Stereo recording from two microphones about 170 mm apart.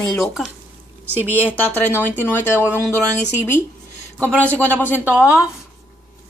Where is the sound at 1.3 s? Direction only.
10° left (ahead or behind).